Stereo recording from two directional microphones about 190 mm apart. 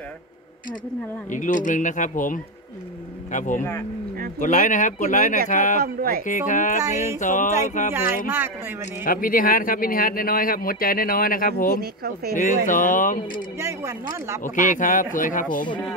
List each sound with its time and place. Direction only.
1.3 s speech: 45° left (ahead or behind)
5.8 s speech: 50° right (ahead or behind)
6.2 s speech: 40° left (ahead or behind)
7.9 s speech: 10° right (ahead or behind)
9.0 s speech: 45° left (ahead or behind)
11.8 s speech: 55° right (ahead or behind)
12.4 s speech: 45° left (ahead or behind)
13.6 s speech: 15° right (ahead or behind)
14.4 s speech: 45° left (ahead or behind)